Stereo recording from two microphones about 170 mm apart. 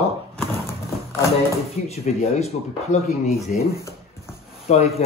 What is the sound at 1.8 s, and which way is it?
Speech, 40° left (ahead or behind).